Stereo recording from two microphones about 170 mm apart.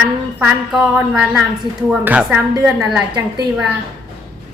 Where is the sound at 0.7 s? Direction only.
5° right (ahead or behind).